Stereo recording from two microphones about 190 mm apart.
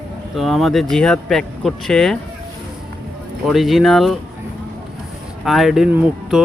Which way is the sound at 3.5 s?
Centre (ahead or behind).